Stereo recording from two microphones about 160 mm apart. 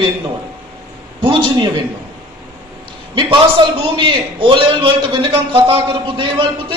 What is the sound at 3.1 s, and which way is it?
A man's voice, 30° right (ahead or behind).